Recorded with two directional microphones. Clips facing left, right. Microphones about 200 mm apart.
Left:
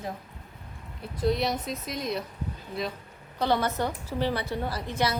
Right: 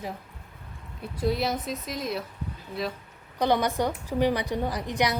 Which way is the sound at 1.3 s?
Centre (ahead or behind).